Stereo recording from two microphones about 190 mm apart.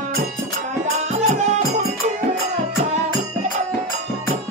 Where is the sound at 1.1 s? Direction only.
35° right (ahead or behind).